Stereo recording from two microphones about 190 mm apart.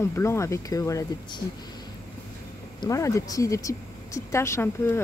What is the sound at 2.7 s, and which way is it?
Speech, 15° left (ahead or behind).